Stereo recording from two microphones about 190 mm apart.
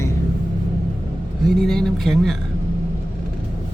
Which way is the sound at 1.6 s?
Centre (ahead or behind).